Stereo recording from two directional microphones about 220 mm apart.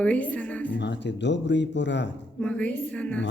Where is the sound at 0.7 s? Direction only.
50° left (ahead or behind).